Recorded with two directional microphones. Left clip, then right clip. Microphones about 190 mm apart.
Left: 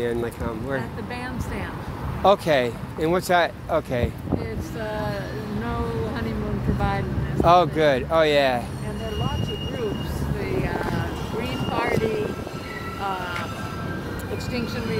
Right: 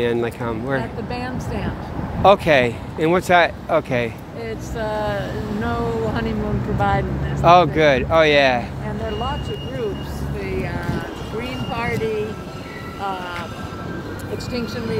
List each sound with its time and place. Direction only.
0.0 s speech: 15° right (ahead or behind)
2.2 s speech: 10° right (ahead or behind)
7.4 s speech: 5° right (ahead or behind)
11.7 s vehicle: centre (ahead or behind)